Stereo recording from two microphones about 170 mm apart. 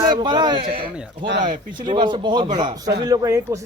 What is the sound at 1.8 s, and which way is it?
Speech, 25° right (ahead or behind).